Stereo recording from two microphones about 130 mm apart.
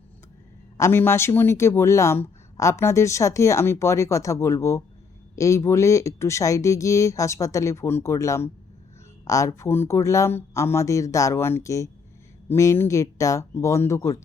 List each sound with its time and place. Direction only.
0.8 s speech: 20° left (ahead or behind)